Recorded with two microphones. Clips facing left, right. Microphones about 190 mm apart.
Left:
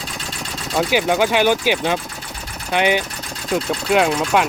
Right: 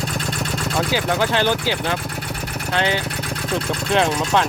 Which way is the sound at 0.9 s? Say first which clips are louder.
Left 4 dB; 15° left (ahead or behind).